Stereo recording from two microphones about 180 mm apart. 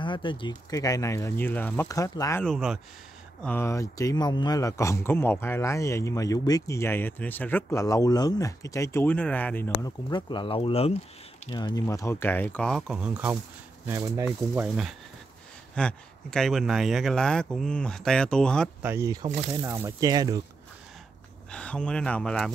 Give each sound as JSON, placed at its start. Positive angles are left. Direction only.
{"t": 0.0, "sound": "speech", "side_deg": 25}
{"t": 2.4, "sound": "speech", "side_deg": 0}
{"t": 3.4, "sound": "a man's voice", "side_deg": 15}
{"t": 9.8, "sound": "speech", "side_deg": 20}
{"t": 11.5, "sound": "a man's voice", "side_deg": 20}
{"t": 15.7, "sound": "speech", "side_deg": 5}
{"t": 18.8, "sound": "speech", "side_deg": -15}
{"t": 21.5, "sound": "speech", "side_deg": 5}